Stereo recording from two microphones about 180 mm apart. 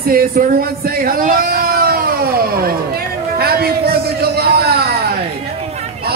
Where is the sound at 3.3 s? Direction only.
60° right (ahead or behind).